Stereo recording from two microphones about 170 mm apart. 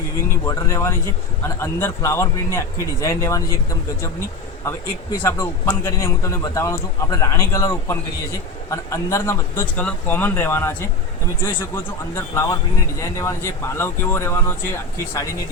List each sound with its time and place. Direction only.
0.2 s speech: 15° left (ahead or behind)
5.8 s speech: 15° left (ahead or behind)